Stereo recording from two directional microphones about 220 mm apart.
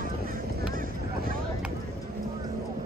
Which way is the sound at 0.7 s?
40° right (ahead or behind).